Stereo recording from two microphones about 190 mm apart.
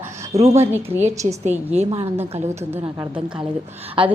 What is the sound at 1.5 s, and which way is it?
Speech, 35° right (ahead or behind).